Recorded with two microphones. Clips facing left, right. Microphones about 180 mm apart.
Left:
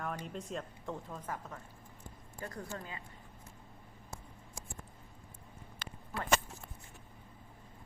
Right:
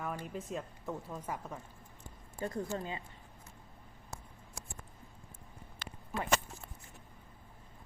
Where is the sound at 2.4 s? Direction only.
25° right (ahead or behind).